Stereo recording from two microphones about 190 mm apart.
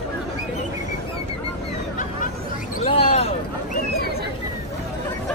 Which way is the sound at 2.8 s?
30° left (ahead or behind).